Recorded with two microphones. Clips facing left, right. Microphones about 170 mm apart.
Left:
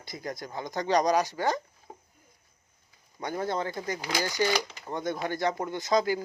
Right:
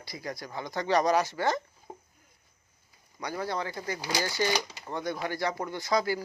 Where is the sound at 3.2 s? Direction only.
25° left (ahead or behind).